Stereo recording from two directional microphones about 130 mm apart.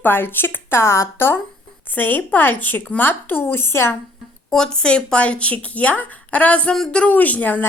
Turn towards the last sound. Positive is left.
turn(degrees=10)  # may be behind; listen again after turning